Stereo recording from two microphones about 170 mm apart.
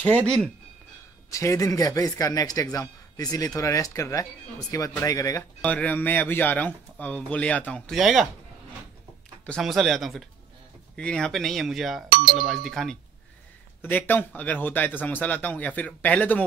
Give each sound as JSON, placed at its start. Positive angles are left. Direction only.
{"t": 0.0, "sound": "speech", "side_deg": 5}
{"t": 1.3, "sound": "speech", "side_deg": 20}
{"t": 5.6, "sound": "speech", "side_deg": 10}
{"t": 9.5, "sound": "speech", "side_deg": 0}